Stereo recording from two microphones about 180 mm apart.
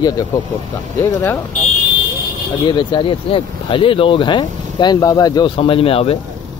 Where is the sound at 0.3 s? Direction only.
20° left (ahead or behind).